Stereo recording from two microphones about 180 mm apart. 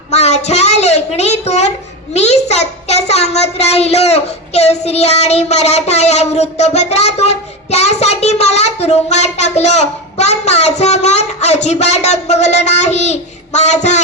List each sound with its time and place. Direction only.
0.1 s child singing: 40° left (ahead or behind)
2.1 s a child's voice: 40° left (ahead or behind)